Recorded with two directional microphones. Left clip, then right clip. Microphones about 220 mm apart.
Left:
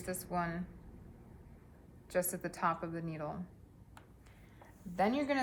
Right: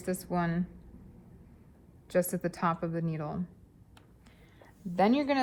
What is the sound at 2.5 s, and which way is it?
Speech, 40° right (ahead or behind).